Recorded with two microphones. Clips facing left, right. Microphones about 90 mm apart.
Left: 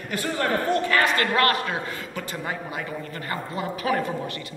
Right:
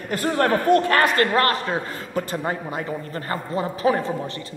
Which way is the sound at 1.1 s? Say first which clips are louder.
Right 2 dB; 35° right (ahead or behind).